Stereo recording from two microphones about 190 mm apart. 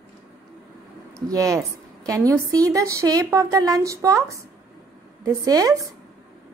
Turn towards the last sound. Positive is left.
turn(degrees=-20)  # may be behind; listen again after turning